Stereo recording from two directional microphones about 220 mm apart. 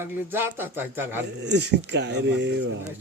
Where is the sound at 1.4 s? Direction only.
50° right (ahead or behind).